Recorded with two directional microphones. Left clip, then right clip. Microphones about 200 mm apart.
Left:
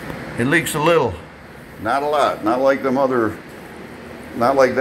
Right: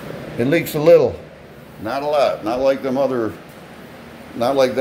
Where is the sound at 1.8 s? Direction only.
25° right (ahead or behind).